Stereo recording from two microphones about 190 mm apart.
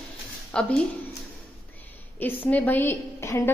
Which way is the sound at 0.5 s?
5° left (ahead or behind).